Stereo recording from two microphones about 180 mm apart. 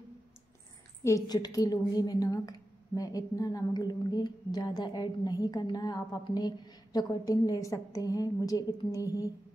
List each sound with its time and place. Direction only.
1.0 s a woman's voice: 20° left (ahead or behind)